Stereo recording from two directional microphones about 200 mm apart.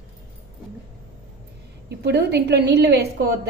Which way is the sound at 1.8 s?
55° right (ahead or behind).